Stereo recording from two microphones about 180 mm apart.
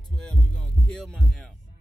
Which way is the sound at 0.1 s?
5° left (ahead or behind).